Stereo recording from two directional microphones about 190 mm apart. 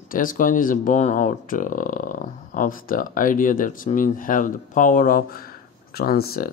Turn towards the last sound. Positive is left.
turn(degrees=55)  # may be behind; listen again after turning